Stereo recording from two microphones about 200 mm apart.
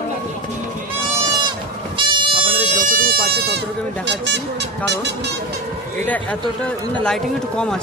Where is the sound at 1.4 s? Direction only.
25° right (ahead or behind).